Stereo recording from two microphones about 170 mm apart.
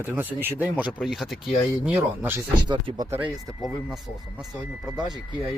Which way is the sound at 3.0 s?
10° right (ahead or behind).